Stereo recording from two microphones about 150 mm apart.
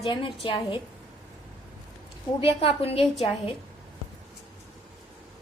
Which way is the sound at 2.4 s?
40° left (ahead or behind).